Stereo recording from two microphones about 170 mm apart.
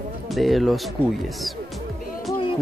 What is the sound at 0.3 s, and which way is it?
Speech, centre (ahead or behind).